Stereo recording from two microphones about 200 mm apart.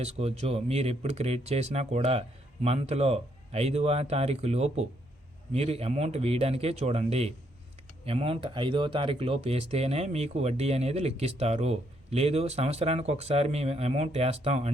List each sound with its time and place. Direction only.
0.0 s speech: 30° right (ahead or behind)